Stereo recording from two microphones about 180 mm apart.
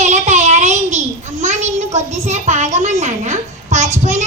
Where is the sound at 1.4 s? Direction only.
40° right (ahead or behind).